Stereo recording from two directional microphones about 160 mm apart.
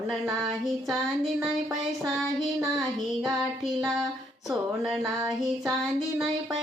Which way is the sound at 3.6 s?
Centre (ahead or behind).